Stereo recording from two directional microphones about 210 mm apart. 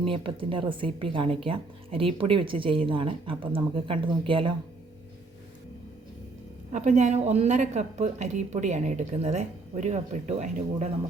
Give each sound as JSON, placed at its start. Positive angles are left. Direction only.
{"t": 0.0, "sound": "a woman's voice", "side_deg": -25}
{"t": 6.7, "sound": "speech", "side_deg": -35}